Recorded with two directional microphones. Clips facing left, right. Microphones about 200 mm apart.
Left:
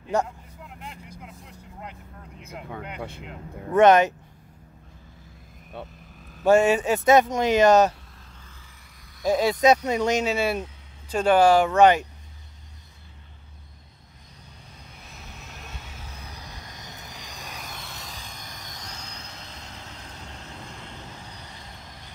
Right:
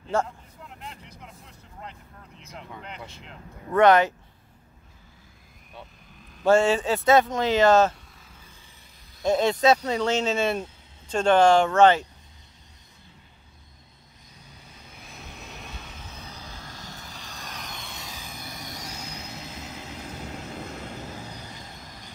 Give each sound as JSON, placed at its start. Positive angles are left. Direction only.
{"t": 0.7, "sound": "vehicle", "side_deg": 5}
{"t": 1.8, "sound": "speech", "side_deg": 10}
{"t": 3.0, "sound": "speech", "side_deg": 55}
{"t": 3.7, "sound": "speech", "side_deg": 20}
{"t": 6.3, "sound": "speech", "side_deg": 15}
{"t": 9.2, "sound": "speech", "side_deg": 10}
{"t": 16.1, "sound": "vehicle", "side_deg": 15}